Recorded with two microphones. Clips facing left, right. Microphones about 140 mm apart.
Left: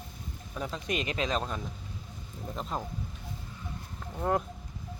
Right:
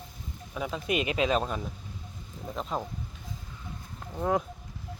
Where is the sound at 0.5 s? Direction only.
5° right (ahead or behind).